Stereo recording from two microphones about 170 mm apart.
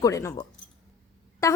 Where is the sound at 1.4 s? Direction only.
20° left (ahead or behind).